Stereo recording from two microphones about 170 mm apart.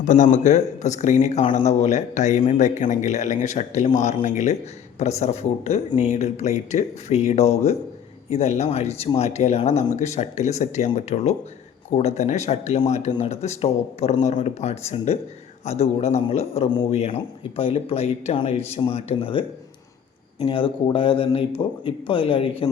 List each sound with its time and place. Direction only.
0.0 s a man's voice: 45° left (ahead or behind); by 22.7 s 30° left (ahead or behind)